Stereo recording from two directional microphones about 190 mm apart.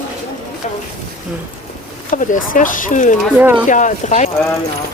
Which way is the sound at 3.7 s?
40° left (ahead or behind).